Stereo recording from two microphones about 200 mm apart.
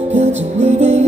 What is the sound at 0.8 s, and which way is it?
Music, 35° right (ahead or behind).